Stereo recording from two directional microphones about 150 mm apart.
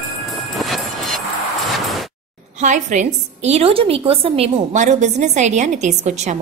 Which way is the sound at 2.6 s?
55° right (ahead or behind).